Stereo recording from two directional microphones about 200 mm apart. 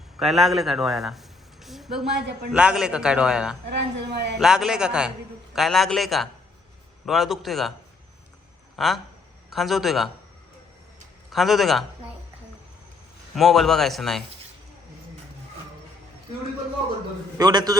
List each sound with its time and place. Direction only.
0.2 s a man's voice: centre (ahead or behind)
3.7 s a woman's voice: 55° right (ahead or behind)
4.4 s a man's voice: centre (ahead or behind)
8.7 s a sound: centre (ahead or behind)
9.5 s a man's voice: centre (ahead or behind)
11.3 s a man's voice: centre (ahead or behind)
13.3 s a man's voice: centre (ahead or behind)
17.3 s a man's voice: 20° right (ahead or behind)